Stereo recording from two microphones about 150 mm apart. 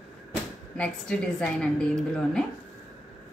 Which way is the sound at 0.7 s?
5° left (ahead or behind).